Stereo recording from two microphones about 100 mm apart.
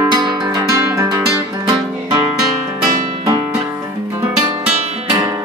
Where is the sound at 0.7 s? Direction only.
30° right (ahead or behind).